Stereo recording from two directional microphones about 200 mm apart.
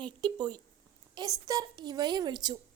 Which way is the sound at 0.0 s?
25° right (ahead or behind).